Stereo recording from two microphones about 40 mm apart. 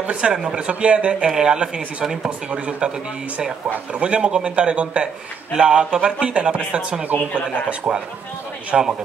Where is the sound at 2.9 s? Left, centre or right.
Centre.